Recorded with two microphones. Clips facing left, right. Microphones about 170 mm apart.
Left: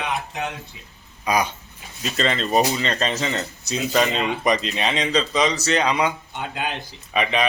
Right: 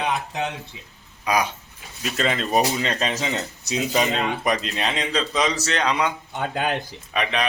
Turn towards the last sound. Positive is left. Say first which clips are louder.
# left 3 dB
turn(degrees=0)  # may be behind; listen again after turning